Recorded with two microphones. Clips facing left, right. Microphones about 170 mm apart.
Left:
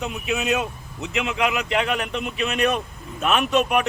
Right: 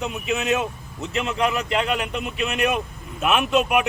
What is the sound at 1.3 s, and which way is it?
Speech, 15° left (ahead or behind).